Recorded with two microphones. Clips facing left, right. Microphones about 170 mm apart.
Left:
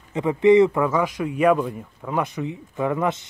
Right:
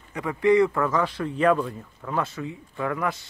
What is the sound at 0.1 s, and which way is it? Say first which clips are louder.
Speech: left 5 dB; 20° left (ahead or behind).